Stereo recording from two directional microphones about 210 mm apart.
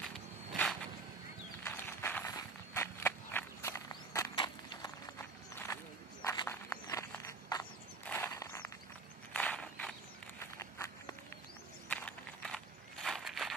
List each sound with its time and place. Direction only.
0.0 s a sound: centre (ahead or behind)
1.6 s walk: 10° left (ahead or behind)
6.2 s walk: 15° left (ahead or behind)